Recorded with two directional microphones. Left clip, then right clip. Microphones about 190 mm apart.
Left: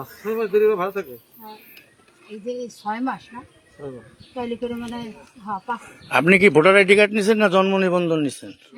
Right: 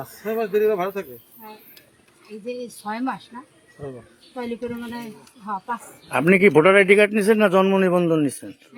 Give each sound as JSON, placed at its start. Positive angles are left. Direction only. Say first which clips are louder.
{"t": 0.0, "sound": "a man's voice", "louder": "left 1 dB", "side_deg": -20}
{"t": 2.5, "sound": "a man's voice", "louder": "left 2 dB", "side_deg": 10}